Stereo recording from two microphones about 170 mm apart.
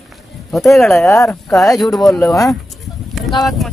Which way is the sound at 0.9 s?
15° left (ahead or behind).